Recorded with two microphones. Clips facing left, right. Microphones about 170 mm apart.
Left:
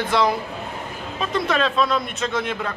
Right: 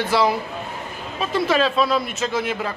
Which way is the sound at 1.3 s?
5° right (ahead or behind).